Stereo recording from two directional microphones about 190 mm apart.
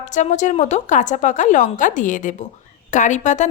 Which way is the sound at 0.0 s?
40° left (ahead or behind).